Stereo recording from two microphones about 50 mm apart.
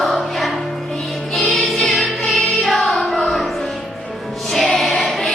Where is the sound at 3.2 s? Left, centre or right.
Centre.